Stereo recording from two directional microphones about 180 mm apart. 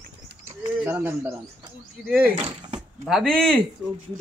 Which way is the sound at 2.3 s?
25° right (ahead or behind).